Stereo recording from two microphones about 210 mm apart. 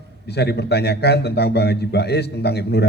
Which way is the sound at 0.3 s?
50° left (ahead or behind).